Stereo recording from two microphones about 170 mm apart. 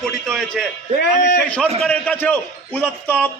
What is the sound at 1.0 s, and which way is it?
Speech, 75° left (ahead or behind).